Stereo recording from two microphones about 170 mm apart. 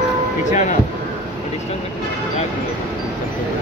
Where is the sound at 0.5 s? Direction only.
45° left (ahead or behind).